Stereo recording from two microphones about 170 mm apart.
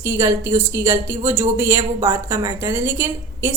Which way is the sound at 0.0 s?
15° right (ahead or behind).